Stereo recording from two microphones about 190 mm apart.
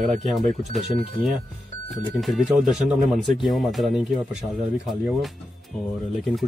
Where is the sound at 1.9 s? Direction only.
Centre (ahead or behind).